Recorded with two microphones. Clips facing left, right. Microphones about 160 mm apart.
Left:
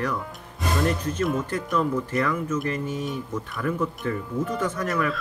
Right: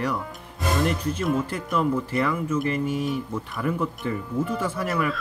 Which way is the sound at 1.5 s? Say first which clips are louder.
Even; 10° right (ahead or behind).